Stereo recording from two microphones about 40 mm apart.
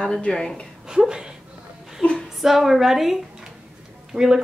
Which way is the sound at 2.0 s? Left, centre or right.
Left.